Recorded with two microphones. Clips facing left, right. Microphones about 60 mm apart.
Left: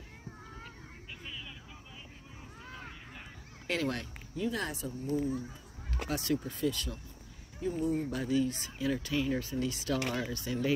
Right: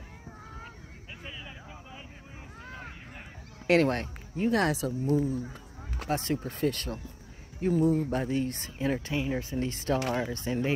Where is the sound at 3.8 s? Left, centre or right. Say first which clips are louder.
Right 6 dB; right.